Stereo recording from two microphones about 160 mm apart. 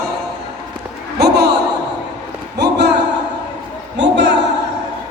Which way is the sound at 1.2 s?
90° right.